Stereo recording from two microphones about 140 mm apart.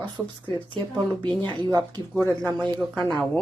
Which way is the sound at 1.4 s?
35° right (ahead or behind).